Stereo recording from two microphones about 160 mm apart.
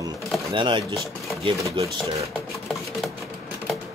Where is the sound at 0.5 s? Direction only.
30° right (ahead or behind).